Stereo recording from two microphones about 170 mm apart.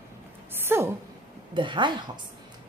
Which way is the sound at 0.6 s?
15° right (ahead or behind).